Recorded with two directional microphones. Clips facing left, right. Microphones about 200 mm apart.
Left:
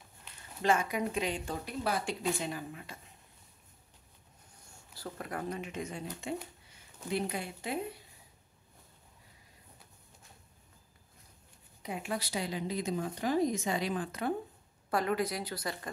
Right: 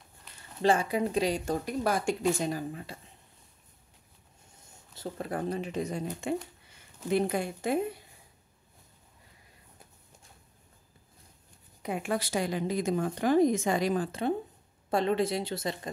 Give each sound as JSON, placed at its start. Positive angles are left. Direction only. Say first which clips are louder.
{"t": 0.6, "sound": "speech", "louder": "right 4 dB", "side_deg": -30}
{"t": 4.9, "sound": "a woman's voice", "louder": "right 5 dB", "side_deg": -25}
{"t": 11.8, "sound": "a woman's voice", "louder": "right 6 dB", "side_deg": -55}
{"t": 14.9, "sound": "speech", "louder": "right 4 dB", "side_deg": -25}